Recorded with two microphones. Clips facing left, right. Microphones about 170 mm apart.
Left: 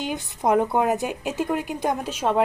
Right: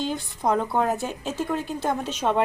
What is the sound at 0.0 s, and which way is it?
A woman's voice, 20° left (ahead or behind).